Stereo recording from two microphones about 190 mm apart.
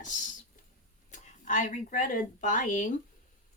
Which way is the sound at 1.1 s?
40° left (ahead or behind).